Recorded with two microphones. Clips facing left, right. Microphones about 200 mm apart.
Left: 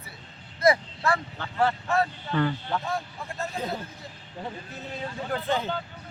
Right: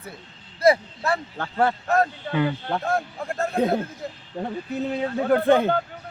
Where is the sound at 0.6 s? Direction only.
25° right (ahead or behind).